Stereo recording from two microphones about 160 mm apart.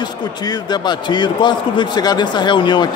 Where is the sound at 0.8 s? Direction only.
30° left (ahead or behind).